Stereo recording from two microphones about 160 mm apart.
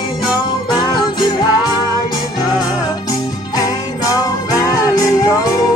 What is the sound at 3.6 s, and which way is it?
Jingle bell, 20° left (ahead or behind).